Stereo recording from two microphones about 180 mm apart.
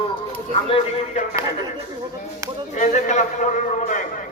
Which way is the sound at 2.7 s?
40° left (ahead or behind).